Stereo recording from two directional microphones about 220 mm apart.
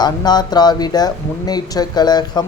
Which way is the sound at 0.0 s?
20° left (ahead or behind).